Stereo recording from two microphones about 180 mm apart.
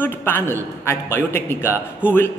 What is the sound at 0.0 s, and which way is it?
A man's voice, 10° left (ahead or behind).